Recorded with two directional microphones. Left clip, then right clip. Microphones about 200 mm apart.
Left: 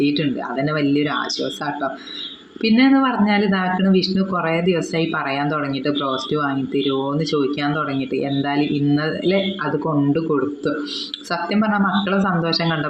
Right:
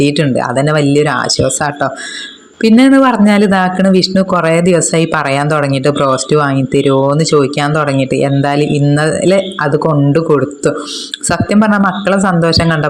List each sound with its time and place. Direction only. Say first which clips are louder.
0.0 s speech: right 9 dB; 45° right (ahead or behind)